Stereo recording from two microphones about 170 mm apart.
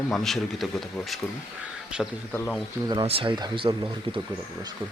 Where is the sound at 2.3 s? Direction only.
5° left (ahead or behind).